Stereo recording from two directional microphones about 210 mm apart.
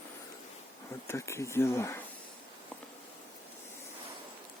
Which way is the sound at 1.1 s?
15° left (ahead or behind).